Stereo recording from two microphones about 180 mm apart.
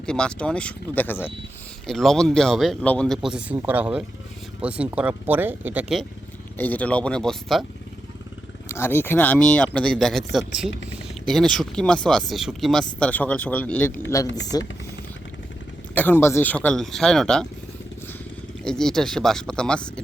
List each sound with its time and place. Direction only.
0.0 s speech: 5° left (ahead or behind)
6.6 s speech: 10° left (ahead or behind)
8.7 s speech: 15° left (ahead or behind)
14.3 s speech: 75° left (ahead or behind)
16.0 s speech: 10° left (ahead or behind)
18.6 s speech: 5° left (ahead or behind)